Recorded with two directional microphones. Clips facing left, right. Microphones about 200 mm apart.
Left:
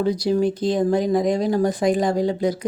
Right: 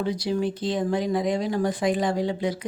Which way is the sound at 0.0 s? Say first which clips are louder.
Left 6 dB; 40° left (ahead or behind).